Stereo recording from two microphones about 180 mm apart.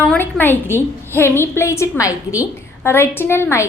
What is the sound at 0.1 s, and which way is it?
A woman's voice, 10° left (ahead or behind).